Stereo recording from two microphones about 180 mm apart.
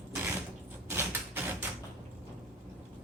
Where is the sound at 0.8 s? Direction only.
10° right (ahead or behind).